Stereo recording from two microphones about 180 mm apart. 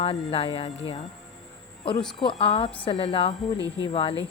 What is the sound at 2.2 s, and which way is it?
Speech, 30° left (ahead or behind).